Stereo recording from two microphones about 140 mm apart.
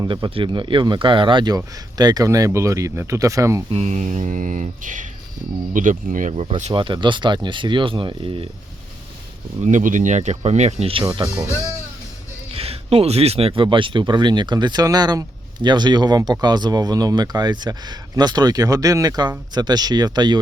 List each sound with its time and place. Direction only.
0.0 s speech: 35° right (ahead or behind)
3.7 s mantra: 50° right (ahead or behind)
6.7 s speech: 35° right (ahead or behind)
9.6 s mantra: 65° right (ahead or behind); by 11.0 s 45° right (ahead or behind)
11.1 s speech: 30° right (ahead or behind)
12.5 s speech: 45° right (ahead or behind)